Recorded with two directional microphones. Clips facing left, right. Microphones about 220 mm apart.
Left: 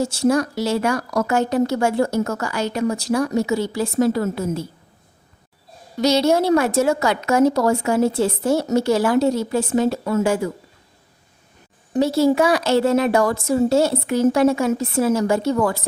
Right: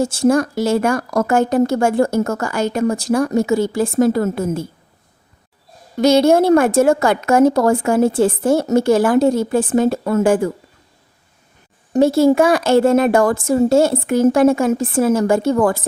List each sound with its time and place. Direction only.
0.0 s a woman's voice: 50° right (ahead or behind)
6.0 s a woman's voice: 50° right (ahead or behind)
11.9 s a woman's voice: 50° right (ahead or behind)